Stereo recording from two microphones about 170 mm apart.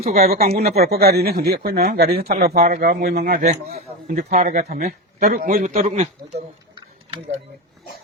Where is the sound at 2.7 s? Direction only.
55° right (ahead or behind).